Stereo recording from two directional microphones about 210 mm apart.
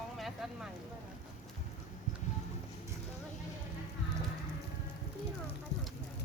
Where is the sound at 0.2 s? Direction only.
Centre (ahead or behind).